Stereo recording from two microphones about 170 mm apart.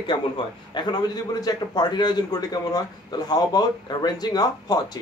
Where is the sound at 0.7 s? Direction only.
25° left (ahead or behind).